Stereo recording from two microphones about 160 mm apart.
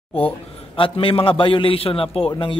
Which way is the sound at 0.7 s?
35° left (ahead or behind).